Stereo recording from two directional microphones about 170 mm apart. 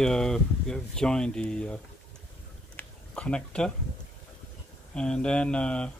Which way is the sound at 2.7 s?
5° left (ahead or behind).